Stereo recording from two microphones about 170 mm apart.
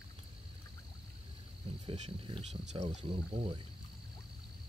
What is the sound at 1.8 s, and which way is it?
Speech, 35° right (ahead or behind).